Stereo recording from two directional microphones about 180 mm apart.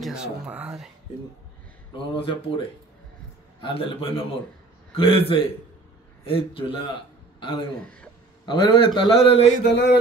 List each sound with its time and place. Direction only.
0.0 s speech: 5° right (ahead or behind)
2.0 s a man's voice: 30° left (ahead or behind)
3.6 s a man's voice: 30° left (ahead or behind)
9.7 s a sound: 70° left (ahead or behind)